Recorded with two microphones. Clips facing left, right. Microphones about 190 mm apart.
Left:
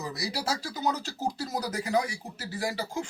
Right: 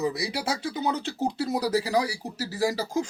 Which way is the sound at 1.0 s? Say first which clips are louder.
Right 5 dB; 60° right (ahead or behind).